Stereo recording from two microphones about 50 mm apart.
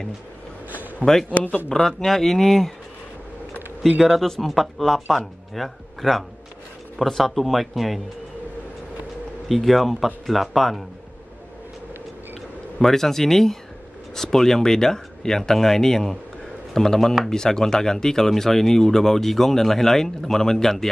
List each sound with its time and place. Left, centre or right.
0.7 s a sound: right
1.3 s speech: left
1.7 s speech: centre
4.0 s speech: centre
9.5 s speech: centre
12.7 s speech: centre